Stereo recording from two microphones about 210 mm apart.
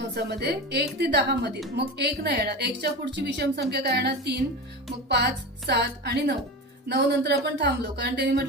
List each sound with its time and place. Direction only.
0.1 s speech: 50° right (ahead or behind)